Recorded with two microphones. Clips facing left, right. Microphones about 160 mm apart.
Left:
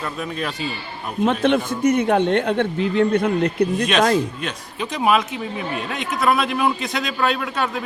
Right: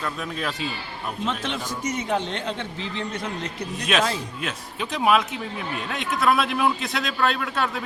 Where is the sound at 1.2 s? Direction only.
55° left (ahead or behind).